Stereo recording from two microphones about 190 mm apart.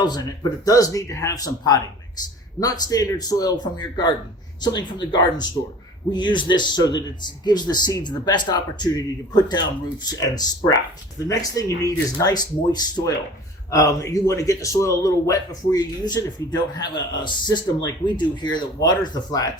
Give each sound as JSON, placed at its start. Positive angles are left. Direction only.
{"t": 0.6, "sound": "a man's voice", "side_deg": 20}